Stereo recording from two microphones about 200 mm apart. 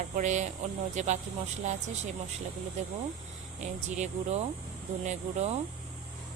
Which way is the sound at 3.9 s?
35° right (ahead or behind).